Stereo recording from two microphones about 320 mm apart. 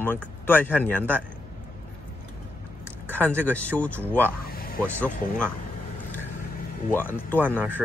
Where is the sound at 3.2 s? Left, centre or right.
Centre.